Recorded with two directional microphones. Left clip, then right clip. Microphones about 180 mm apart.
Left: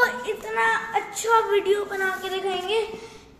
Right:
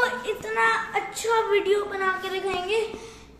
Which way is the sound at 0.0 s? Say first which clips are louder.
Left 2 dB; 5° left (ahead or behind).